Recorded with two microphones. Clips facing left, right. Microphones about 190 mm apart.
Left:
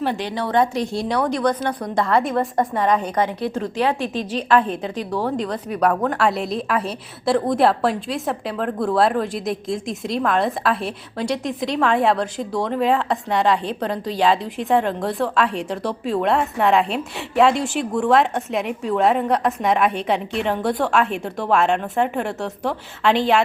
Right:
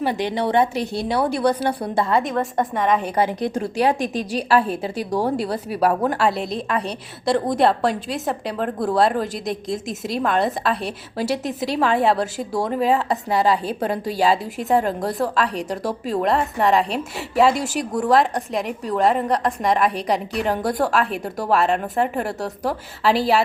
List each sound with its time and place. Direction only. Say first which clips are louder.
0.0 s a woman's voice: right 2 dB; 15° right (ahead or behind)
0.8 s a woman's voice: even; 5° right (ahead or behind)
17.5 s speech: left 1 dB; 40° right (ahead or behind)
18.0 s a woman's voice: even; centre (ahead or behind)